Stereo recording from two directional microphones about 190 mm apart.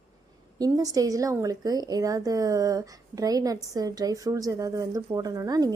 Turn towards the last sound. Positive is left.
turn(degrees=-20)  # may be behind; listen again after turning